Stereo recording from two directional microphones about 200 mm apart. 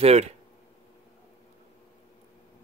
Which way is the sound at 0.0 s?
30° right (ahead or behind).